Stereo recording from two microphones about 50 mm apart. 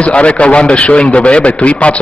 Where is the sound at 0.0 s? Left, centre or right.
Left.